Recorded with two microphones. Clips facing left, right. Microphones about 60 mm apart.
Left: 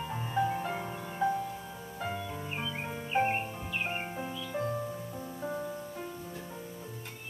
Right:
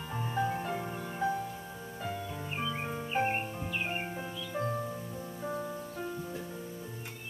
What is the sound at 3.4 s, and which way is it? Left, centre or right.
Music, centre.